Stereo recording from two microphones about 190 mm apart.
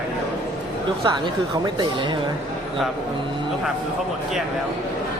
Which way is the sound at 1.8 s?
25° right (ahead or behind).